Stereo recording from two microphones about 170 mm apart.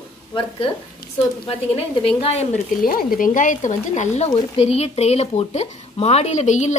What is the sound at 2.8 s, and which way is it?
Speech, 60° left (ahead or behind).